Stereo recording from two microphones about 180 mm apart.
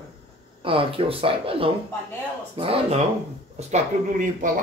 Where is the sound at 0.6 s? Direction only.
30° right (ahead or behind).